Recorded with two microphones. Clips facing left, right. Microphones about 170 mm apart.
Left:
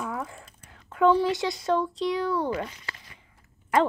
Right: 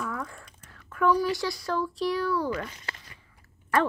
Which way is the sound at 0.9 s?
25° left (ahead or behind).